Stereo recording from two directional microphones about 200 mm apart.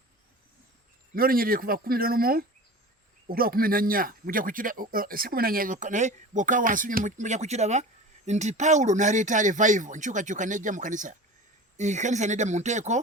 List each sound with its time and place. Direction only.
1.1 s speech: 45° right (ahead or behind)